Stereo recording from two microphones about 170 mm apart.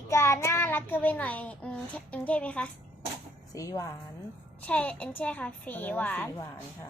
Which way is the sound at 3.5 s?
20° left (ahead or behind).